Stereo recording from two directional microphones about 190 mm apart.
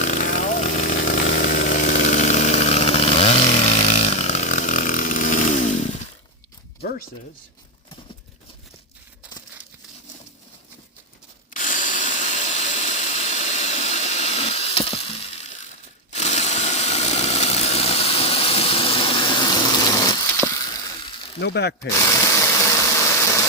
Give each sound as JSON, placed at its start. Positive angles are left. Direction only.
{"t": 0.0, "sound": "chainsaw", "side_deg": 40}
{"t": 11.5, "sound": "tools", "side_deg": 40}
{"t": 16.1, "sound": "a sound", "side_deg": 35}
{"t": 21.4, "sound": "speech", "side_deg": 65}
{"t": 21.8, "sound": "engine", "side_deg": 15}